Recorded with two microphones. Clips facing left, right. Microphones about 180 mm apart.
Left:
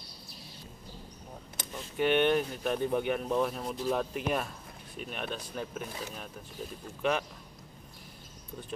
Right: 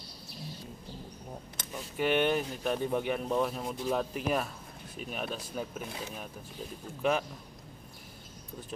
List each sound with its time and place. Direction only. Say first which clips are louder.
1.7 s speech: left 1 dB; 5° right (ahead or behind)
7.0 s speech: right 1 dB; 5° right (ahead or behind)